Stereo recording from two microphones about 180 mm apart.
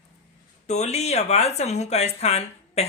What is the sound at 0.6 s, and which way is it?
Speech, 40° left (ahead or behind).